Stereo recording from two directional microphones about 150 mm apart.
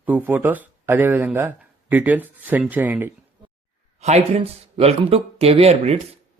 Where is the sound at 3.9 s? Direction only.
45° right (ahead or behind).